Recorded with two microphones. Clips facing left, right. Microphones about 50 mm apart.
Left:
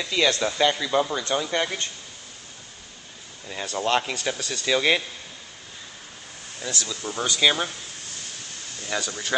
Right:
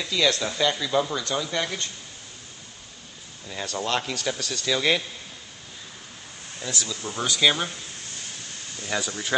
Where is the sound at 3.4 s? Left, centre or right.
Centre.